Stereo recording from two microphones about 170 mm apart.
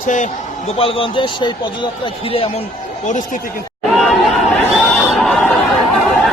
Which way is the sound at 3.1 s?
50° left (ahead or behind).